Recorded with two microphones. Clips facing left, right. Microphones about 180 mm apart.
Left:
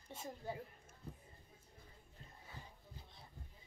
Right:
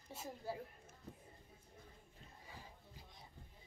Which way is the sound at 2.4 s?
10° right (ahead or behind).